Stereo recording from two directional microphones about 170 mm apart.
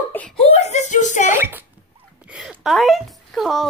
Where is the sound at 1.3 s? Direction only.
15° right (ahead or behind).